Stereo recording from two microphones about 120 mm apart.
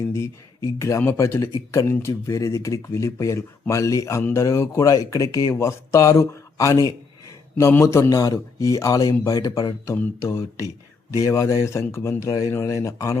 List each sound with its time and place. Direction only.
0.0 s speech: 25° left (ahead or behind)
7.5 s speech: 20° left (ahead or behind)